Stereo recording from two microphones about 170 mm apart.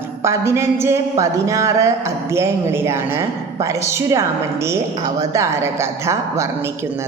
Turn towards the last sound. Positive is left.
turn(degrees=-15)  # may be behind; listen again after turning